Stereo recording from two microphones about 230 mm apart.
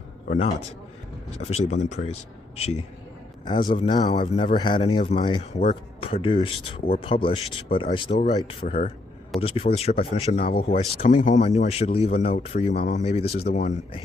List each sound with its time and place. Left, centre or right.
0.3 s speech: left